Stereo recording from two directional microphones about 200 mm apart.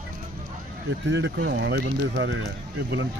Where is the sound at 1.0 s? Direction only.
65° right (ahead or behind).